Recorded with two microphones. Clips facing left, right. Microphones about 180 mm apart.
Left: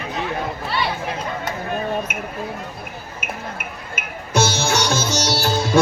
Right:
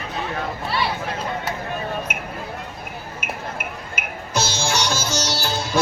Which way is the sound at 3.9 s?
55° left (ahead or behind).